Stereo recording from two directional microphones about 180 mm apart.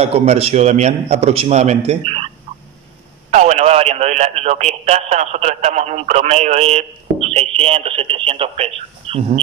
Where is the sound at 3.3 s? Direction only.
40° right (ahead or behind).